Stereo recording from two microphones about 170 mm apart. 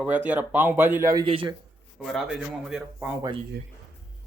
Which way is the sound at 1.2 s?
30° right (ahead or behind).